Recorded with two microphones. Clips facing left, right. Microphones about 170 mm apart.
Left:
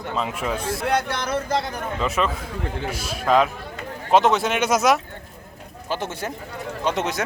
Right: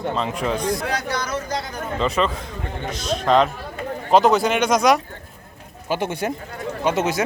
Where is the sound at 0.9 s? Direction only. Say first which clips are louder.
Left 2 dB; 55° left (ahead or behind).